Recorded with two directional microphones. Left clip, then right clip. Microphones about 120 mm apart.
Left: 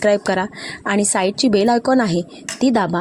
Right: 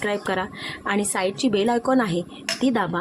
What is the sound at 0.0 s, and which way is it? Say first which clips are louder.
A woman's voice: left 8 dB; 45° left (ahead or behind).